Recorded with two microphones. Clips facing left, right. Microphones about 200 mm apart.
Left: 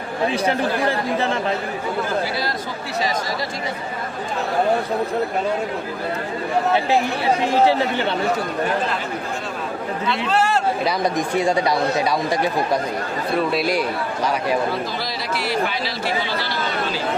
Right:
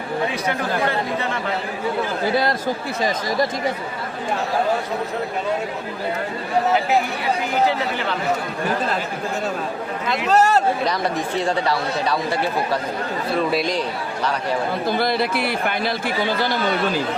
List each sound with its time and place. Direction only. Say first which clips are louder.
0.3 s speech: left 3 dB; 30° left (ahead or behind)
7.7 s speech: left 4 dB; 30° left (ahead or behind)
10.2 s a man's voice: right 4 dB; 40° right (ahead or behind)
10.8 s speech: left 2 dB; 10° left (ahead or behind)
14.8 s speech: right 7 dB; 55° right (ahead or behind)